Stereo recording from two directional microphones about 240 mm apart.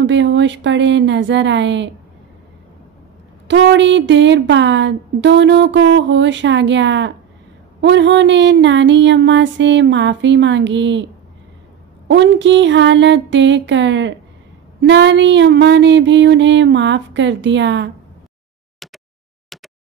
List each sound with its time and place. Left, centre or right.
0.0 s speech: right
3.4 s speech: right
12.1 s speech: right